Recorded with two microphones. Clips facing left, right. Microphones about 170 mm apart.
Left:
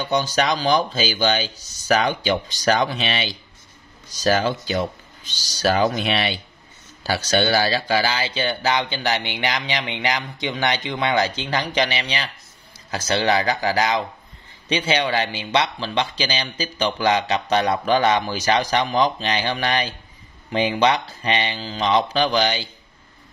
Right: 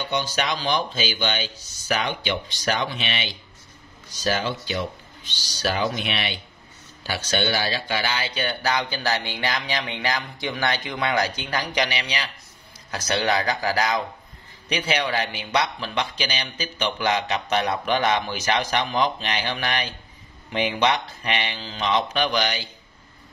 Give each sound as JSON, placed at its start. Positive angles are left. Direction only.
{"t": 0.0, "sound": "speech", "side_deg": 40}